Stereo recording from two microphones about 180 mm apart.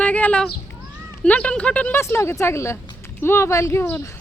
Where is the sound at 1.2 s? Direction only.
5° left (ahead or behind).